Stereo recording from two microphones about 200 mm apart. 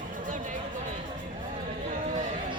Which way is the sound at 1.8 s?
35° right (ahead or behind).